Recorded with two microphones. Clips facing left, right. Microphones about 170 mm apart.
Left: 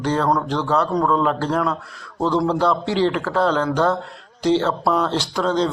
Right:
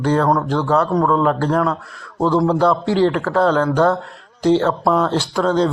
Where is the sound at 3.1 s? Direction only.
5° left (ahead or behind).